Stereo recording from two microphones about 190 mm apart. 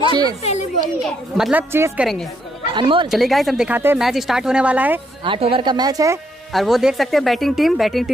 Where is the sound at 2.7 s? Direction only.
25° right (ahead or behind).